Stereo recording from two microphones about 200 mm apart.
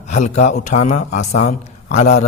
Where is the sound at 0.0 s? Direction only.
35° left (ahead or behind).